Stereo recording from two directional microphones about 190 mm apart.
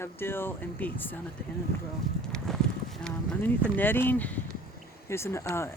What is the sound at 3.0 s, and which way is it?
Speech, 5° left (ahead or behind).